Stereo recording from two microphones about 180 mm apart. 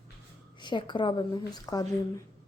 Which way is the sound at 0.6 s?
25° left (ahead or behind).